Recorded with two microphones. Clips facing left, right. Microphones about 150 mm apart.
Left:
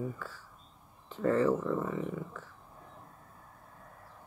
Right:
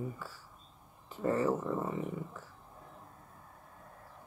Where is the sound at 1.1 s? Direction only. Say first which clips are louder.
Left 3 dB; 10° right (ahead or behind).